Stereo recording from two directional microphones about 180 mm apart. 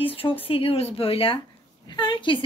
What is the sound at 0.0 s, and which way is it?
Speech, 30° left (ahead or behind).